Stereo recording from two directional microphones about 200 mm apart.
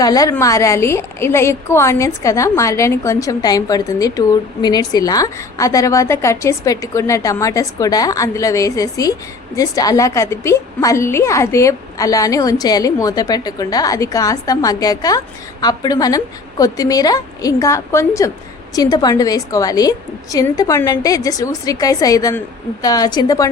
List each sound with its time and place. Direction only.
0.0 s a woman's voice: 20° left (ahead or behind)